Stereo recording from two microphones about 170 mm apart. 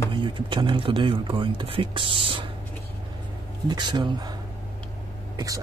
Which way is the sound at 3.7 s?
25° right (ahead or behind).